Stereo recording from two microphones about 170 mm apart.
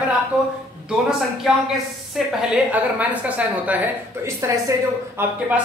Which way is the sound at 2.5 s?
10° right (ahead or behind).